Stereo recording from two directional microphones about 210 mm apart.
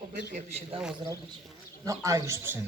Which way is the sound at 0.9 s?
15° right (ahead or behind).